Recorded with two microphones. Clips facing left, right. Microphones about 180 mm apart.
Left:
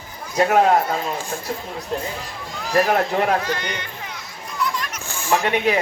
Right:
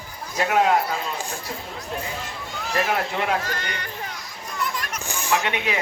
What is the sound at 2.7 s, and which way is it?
Speech, 40° left (ahead or behind).